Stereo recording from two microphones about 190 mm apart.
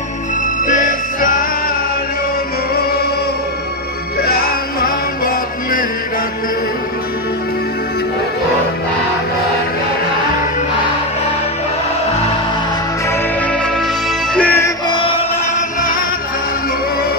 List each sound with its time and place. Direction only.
0.7 s music: 45° left (ahead or behind)
4.8 s music: 50° left (ahead or behind)
14.3 s music: 10° left (ahead or behind)
14.9 s chant: 25° left (ahead or behind)